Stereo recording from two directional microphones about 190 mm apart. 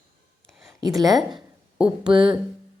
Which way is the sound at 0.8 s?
20° right (ahead or behind).